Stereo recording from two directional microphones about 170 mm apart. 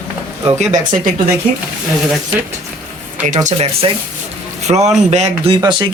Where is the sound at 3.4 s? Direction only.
35° right (ahead or behind).